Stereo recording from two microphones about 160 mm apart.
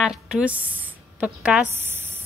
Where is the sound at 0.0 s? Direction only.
5° right (ahead or behind).